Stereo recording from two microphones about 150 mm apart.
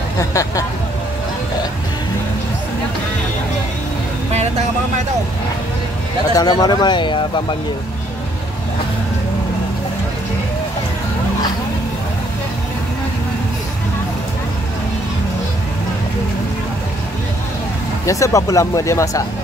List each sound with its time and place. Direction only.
0.2 s speech: 20° left (ahead or behind)
6.3 s speech: 25° left (ahead or behind)
18.0 s speech: 20° left (ahead or behind)